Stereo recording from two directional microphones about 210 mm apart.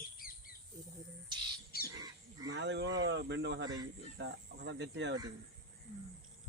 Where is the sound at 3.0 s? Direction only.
55° right (ahead or behind).